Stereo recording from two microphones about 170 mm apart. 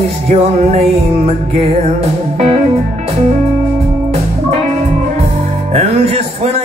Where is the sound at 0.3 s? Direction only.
40° right (ahead or behind).